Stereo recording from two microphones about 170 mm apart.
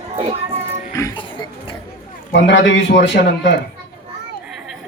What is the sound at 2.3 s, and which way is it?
Speech, 90° left.